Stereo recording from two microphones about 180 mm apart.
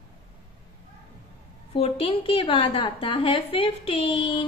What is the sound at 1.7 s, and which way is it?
A woman's voice, 30° left (ahead or behind).